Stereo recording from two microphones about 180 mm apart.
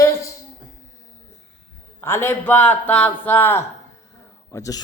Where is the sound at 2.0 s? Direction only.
10° left (ahead or behind).